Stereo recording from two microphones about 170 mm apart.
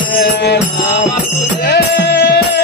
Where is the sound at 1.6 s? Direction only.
85° left.